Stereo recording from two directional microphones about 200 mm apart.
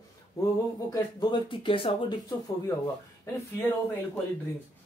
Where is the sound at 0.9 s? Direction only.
20° left (ahead or behind).